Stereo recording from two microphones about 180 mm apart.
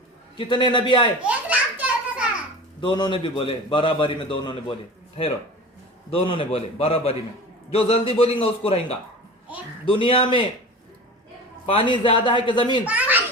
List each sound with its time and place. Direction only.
0.3 s a man's voice: 25° left (ahead or behind)
1.2 s children playing: 10° right (ahead or behind)
2.8 s a man's voice: 25° left (ahead or behind)
6.1 s a man's voice: 30° left (ahead or behind)
11.6 s a man's voice: 30° left (ahead or behind)
12.8 s a child's voice: 10° right (ahead or behind)